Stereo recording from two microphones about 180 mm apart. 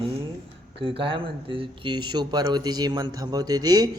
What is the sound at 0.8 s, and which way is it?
Speech, 30° right (ahead or behind).